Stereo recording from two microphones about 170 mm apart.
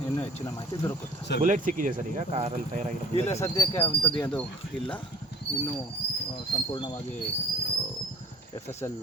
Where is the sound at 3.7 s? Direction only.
35° left (ahead or behind).